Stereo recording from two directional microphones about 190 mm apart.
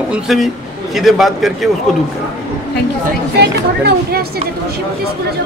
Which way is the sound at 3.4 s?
55° right (ahead or behind).